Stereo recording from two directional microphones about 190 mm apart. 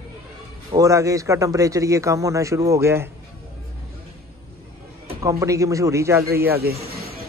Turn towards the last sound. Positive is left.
turn(degrees=-55)  # may be behind; listen again after turning